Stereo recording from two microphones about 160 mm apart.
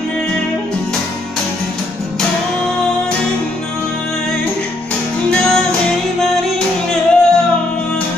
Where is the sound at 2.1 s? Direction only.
5° left (ahead or behind).